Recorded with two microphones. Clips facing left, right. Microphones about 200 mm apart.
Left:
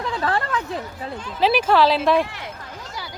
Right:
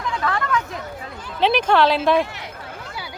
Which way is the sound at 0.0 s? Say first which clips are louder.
Left 1 dB; 35° left (ahead or behind).